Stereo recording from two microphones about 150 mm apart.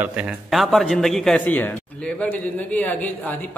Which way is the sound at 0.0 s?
10° right (ahead or behind).